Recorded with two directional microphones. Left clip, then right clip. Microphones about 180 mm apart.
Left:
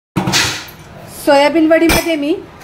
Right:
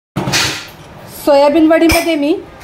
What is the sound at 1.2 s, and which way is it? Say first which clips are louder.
Speech: right 1 dB; 15° right (ahead or behind).